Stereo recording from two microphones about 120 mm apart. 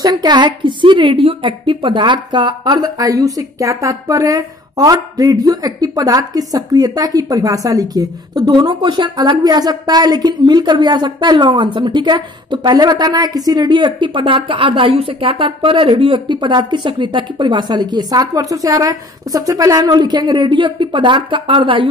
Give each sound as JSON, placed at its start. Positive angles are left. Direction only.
{"t": 0.0, "sound": "a woman's voice", "side_deg": -35}